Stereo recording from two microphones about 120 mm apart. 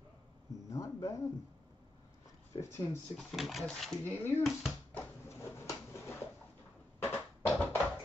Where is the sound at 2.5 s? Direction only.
35° left (ahead or behind).